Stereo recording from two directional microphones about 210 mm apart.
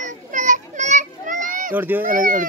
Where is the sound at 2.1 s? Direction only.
40° right (ahead or behind).